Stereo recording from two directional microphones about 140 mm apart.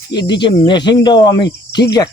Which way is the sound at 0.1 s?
35° left (ahead or behind).